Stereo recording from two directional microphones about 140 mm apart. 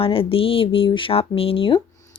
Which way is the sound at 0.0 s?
40° left (ahead or behind).